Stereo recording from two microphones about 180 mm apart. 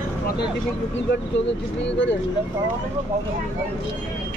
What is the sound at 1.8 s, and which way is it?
Speech, 80° left.